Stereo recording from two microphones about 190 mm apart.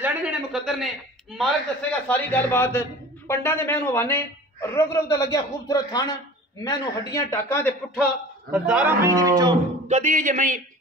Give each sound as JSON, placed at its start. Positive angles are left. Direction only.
{"t": 0.0, "sound": "a man's voice", "side_deg": -5}
{"t": 8.5, "sound": "a man's voice", "side_deg": -5}
{"t": 9.0, "sound": "speech", "side_deg": -20}
{"t": 9.8, "sound": "speech", "side_deg": -40}